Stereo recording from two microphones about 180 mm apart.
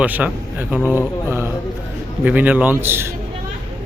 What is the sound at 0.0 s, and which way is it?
Speech, 10° right (ahead or behind).